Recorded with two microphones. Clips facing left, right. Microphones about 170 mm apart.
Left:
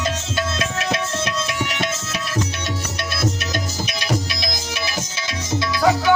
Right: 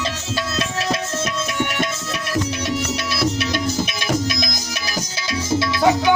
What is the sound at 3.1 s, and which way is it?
Music, 70° right (ahead or behind).